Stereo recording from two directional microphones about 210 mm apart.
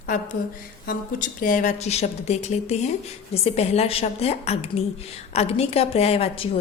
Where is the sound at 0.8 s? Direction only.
40° left (ahead or behind).